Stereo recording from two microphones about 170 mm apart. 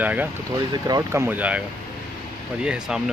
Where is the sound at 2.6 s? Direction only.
5° right (ahead or behind).